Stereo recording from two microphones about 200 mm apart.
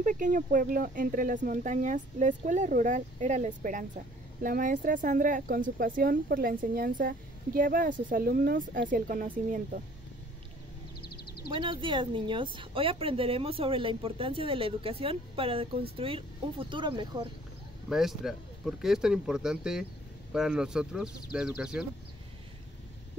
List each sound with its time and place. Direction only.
0.0 s speech: 40° right (ahead or behind)
11.0 s a sound: 50° left (ahead or behind)
11.5 s a woman's voice: 25° right (ahead or behind)
17.8 s speech: centre (ahead or behind)